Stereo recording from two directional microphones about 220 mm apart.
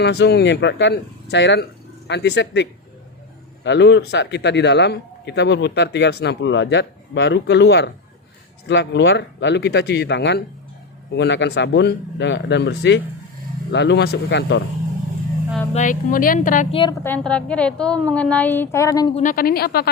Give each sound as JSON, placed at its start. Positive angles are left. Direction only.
{"t": 0.0, "sound": "speech", "side_deg": 50}
{"t": 15.7, "sound": "speech", "side_deg": 35}
{"t": 17.0, "sound": "a woman's voice", "side_deg": 5}
{"t": 19.1, "sound": "speech", "side_deg": 35}